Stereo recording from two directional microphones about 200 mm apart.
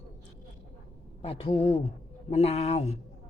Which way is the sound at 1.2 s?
30° left (ahead or behind).